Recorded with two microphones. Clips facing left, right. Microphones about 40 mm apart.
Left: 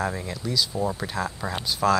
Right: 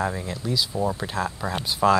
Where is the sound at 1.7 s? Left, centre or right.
Centre.